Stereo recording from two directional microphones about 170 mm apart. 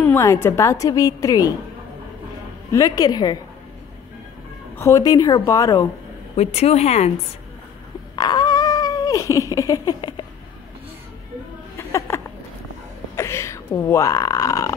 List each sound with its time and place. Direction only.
0.0 s a woman's voice: 15° left (ahead or behind)
2.7 s a woman's voice: 20° left (ahead or behind)
4.7 s a woman's voice: 15° left (ahead or behind)
6.3 s speech: 40° left (ahead or behind)
8.2 s a sound: 25° left (ahead or behind)
12.1 s a sound: 15° left (ahead or behind)
13.7 s a woman's voice: 15° left (ahead or behind)